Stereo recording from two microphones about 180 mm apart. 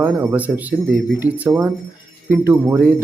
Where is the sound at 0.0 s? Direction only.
10° right (ahead or behind).